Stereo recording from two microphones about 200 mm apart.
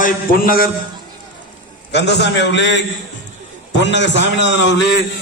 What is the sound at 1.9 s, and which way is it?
Speech, 60° left (ahead or behind).